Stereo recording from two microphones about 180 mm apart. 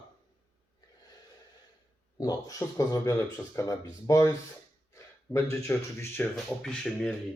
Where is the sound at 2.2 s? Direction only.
20° left (ahead or behind).